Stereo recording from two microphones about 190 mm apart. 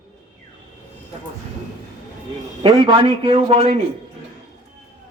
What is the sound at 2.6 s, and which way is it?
A man's voice, 25° right (ahead or behind).